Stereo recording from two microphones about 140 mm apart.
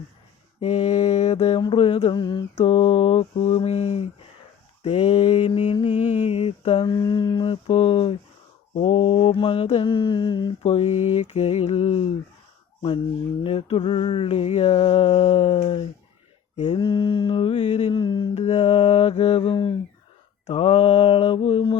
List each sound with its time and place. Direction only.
0.6 s mantra: 50° left (ahead or behind)
2.6 s mantra: 50° left (ahead or behind)
6.7 s mantra: 35° left (ahead or behind)
10.6 s mantra: 50° left (ahead or behind)
13.4 s mantra: 45° left (ahead or behind)
18.0 s mantra: 35° left (ahead or behind)
18.3 s mantra: 50° left (ahead or behind)